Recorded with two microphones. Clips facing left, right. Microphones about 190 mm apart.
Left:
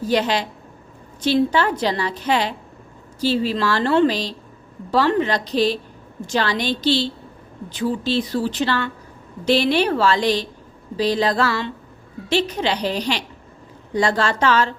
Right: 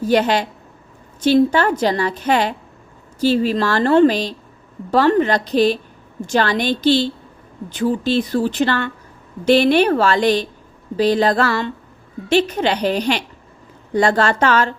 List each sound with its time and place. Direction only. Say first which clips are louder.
0.1 s a woman's voice: right 4 dB; 50° right (ahead or behind)